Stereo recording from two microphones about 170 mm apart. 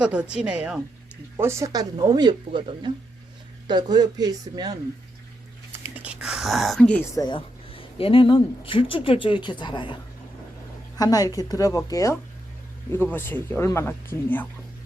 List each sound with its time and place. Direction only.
0.0 s a woman's voice: 5° right (ahead or behind); by 4.8 s 25° right (ahead or behind)
6.0 s speech: 5° right (ahead or behind)
7.2 s a woman's voice: 30° left (ahead or behind)
10.9 s a woman's voice: 20° left (ahead or behind)